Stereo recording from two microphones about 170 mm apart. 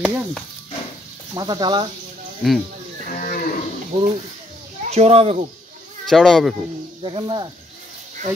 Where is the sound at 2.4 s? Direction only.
Centre (ahead or behind).